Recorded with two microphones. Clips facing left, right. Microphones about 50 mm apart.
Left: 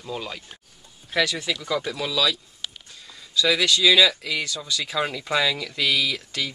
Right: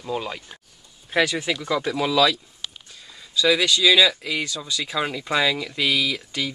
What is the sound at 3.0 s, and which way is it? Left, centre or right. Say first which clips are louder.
Speech: right 2 dB; centre.